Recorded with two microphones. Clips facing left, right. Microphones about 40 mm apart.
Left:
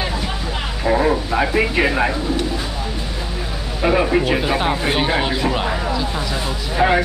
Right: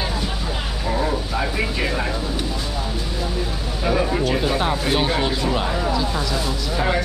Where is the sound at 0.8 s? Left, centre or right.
Left.